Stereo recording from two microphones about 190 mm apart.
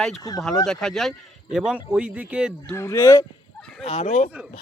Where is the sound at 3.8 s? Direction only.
40° left (ahead or behind).